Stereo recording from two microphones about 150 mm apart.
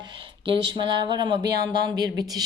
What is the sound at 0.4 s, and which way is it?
A woman's voice, 35° right (ahead or behind).